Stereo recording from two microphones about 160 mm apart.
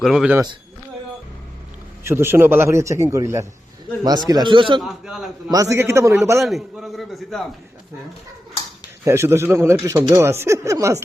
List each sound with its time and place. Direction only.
0.0 s a man's voice: centre (ahead or behind)
2.0 s a man's voice: 15° right (ahead or behind); by 4.8 s 30° right (ahead or behind)
4.8 s a man's voice: centre (ahead or behind)
5.5 s a man's voice: 20° right (ahead or behind)
6.4 s a man's voice: centre (ahead or behind)
9.0 s speech: 15° right (ahead or behind)